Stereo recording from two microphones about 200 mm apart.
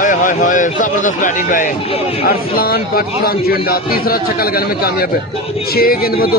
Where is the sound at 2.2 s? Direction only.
50° left (ahead or behind).